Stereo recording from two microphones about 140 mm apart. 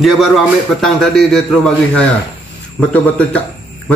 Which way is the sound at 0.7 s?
5° left (ahead or behind).